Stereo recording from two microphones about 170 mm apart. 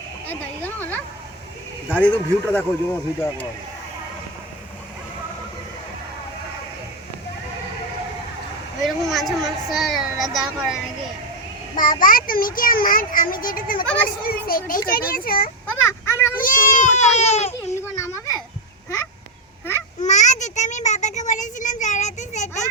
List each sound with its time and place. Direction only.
0.3 s speech: 10° left (ahead or behind)
8.8 s speech: centre (ahead or behind)
11.8 s a child's voice: 55° left (ahead or behind)
15.6 s speech: 15° left (ahead or behind)
16.4 s speech: 50° left (ahead or behind)
20.0 s a sound: 45° left (ahead or behind)